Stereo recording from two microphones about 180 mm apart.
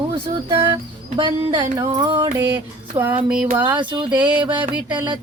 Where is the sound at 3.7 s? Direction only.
25° right (ahead or behind).